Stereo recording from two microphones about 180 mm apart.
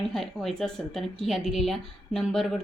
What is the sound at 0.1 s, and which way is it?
A woman's voice, centre (ahead or behind).